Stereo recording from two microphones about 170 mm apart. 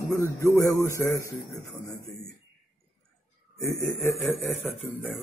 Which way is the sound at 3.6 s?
15° left (ahead or behind).